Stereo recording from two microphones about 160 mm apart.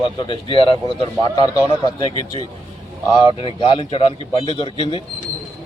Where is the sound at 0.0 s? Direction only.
30° left (ahead or behind).